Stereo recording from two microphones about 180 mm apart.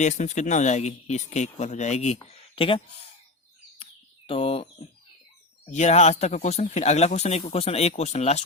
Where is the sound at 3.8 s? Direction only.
30° left (ahead or behind).